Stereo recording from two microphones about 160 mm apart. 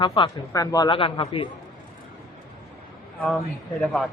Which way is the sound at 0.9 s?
35° left (ahead or behind).